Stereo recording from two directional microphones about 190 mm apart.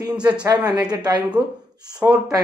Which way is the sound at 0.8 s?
20° right (ahead or behind).